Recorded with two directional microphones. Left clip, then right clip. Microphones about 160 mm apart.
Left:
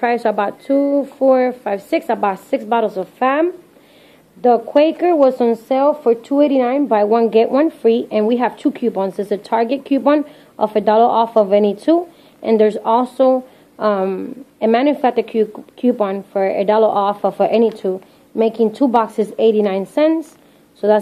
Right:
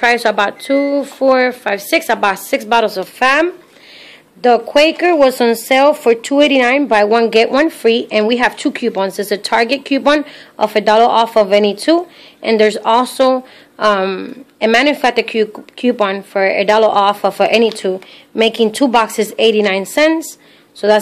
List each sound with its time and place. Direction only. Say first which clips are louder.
0.0 s speech: right 4 dB; 5° right (ahead or behind)